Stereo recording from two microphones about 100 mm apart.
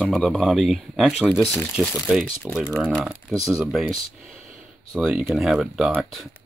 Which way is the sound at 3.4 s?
5° right (ahead or behind).